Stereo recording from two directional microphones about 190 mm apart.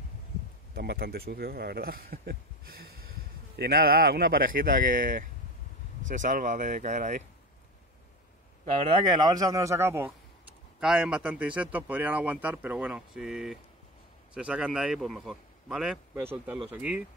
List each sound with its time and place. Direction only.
0.7 s speech: 55° right (ahead or behind)
3.5 s speech: 55° right (ahead or behind)
8.8 s a man's voice: 20° right (ahead or behind)